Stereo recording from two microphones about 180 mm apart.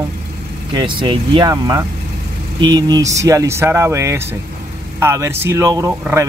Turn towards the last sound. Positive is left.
turn(degrees=-15)  # may be behind; listen again after turning